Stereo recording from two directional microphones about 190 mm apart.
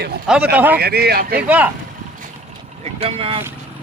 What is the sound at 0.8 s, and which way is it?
Speech, 55° right (ahead or behind).